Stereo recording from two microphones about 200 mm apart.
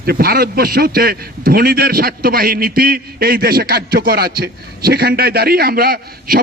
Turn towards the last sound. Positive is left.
turn(degrees=-50)  # may be behind; listen again after turning